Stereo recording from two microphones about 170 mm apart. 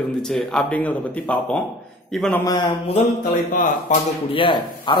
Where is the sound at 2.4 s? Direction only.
25° left (ahead or behind).